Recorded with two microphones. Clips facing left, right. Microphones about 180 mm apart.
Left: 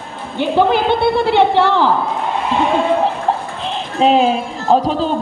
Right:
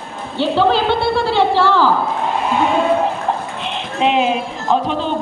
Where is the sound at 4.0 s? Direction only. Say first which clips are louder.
Left 3 dB; 35° left (ahead or behind).